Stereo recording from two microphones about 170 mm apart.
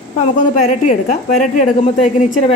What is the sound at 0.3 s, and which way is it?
A woman's voice, 50° left (ahead or behind).